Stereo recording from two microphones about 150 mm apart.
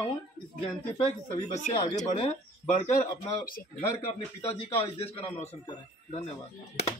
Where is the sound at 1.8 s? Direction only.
35° left (ahead or behind).